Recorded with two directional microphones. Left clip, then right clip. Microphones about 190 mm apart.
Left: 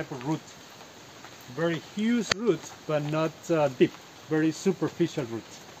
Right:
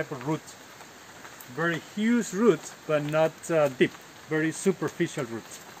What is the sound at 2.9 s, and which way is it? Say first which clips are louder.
Speech: right 4 dB; 10° left (ahead or behind).